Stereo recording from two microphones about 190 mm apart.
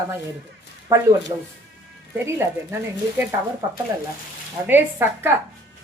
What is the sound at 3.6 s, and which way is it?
A woman's voice, 20° right (ahead or behind).